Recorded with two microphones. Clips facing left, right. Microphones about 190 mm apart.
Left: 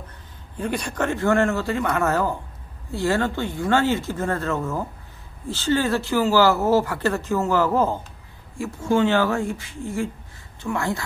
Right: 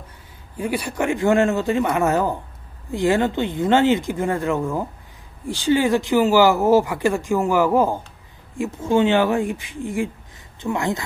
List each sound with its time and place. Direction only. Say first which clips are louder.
0.6 s speech: right 2 dB; 10° right (ahead or behind)